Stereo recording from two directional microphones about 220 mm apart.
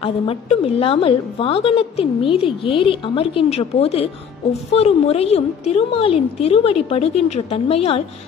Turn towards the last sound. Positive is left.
turn(degrees=25)  # may be behind; listen again after turning